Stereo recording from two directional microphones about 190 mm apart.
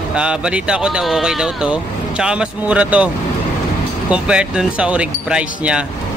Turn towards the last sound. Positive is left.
turn(degrees=-5)  # may be behind; listen again after turning